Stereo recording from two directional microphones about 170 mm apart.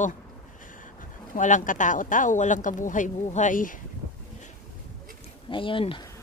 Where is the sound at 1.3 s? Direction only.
50° left (ahead or behind).